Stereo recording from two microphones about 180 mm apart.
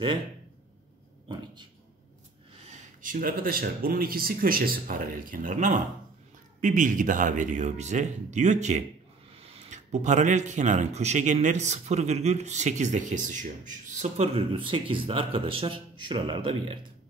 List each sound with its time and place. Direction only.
1.3 s speech: 25° right (ahead or behind)
2.5 s speech: 40° right (ahead or behind)